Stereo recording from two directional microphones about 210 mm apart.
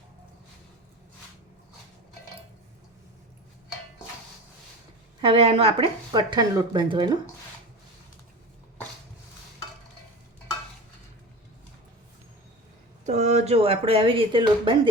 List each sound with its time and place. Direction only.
5.2 s speech: 25° right (ahead or behind)
13.1 s speech: 30° right (ahead or behind)